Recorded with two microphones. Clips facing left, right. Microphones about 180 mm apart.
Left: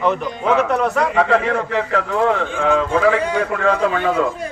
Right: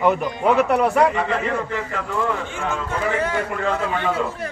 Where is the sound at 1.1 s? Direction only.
90° left.